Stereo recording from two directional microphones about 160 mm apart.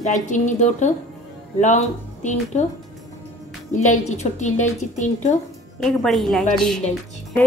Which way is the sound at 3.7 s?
50° left (ahead or behind).